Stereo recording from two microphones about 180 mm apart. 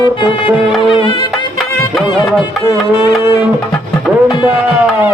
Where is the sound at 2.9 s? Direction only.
25° left (ahead or behind).